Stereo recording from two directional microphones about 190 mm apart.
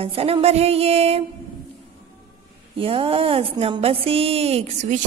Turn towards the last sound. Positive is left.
turn(degrees=-35)  # may be behind; listen again after turning